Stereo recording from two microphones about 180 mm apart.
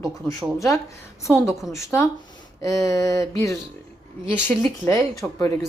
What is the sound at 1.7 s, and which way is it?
A woman's voice, 15° left (ahead or behind).